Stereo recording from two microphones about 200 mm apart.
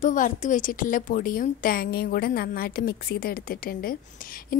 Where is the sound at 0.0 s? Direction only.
40° left (ahead or behind).